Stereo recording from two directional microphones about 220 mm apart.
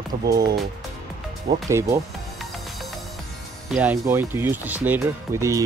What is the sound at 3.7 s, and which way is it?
Speech, 5° right (ahead or behind).